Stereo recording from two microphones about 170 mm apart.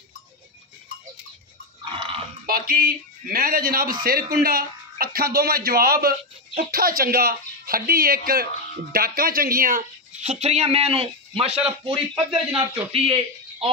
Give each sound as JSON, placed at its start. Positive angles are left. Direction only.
{"t": 1.9, "sound": "dog", "side_deg": -30}
{"t": 2.4, "sound": "a man's voice", "side_deg": -60}